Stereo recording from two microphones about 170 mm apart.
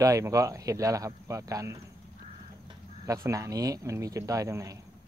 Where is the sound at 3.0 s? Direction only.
20° right (ahead or behind).